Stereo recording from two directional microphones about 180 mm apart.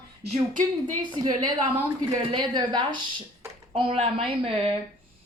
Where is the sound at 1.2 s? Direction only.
20° right (ahead or behind).